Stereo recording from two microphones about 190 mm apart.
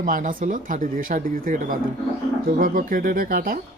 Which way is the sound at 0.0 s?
45° right (ahead or behind).